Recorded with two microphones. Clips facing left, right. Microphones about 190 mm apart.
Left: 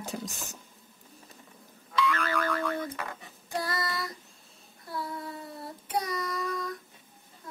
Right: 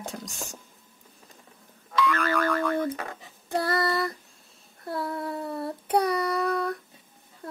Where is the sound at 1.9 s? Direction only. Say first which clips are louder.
Right 4 dB; 45° right (ahead or behind).